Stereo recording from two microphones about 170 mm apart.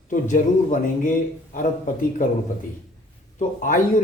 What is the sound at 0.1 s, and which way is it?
Speech, 50° left (ahead or behind).